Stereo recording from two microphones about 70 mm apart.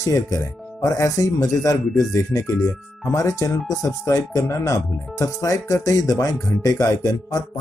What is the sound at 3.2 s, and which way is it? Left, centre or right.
Speech, left.